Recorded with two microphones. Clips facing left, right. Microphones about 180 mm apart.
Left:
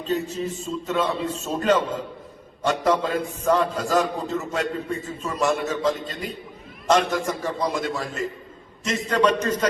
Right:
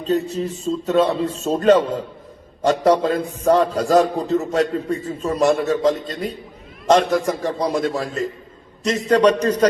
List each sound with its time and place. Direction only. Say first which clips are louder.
0.0 s a man's voice: right 5 dB; 35° right (ahead or behind)